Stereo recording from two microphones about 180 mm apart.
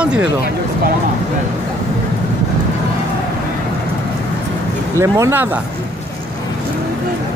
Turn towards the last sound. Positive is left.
turn(degrees=-10)  # may be behind; listen again after turning